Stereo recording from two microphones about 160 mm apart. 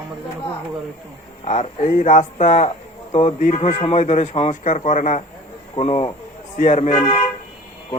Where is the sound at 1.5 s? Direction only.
45° left (ahead or behind).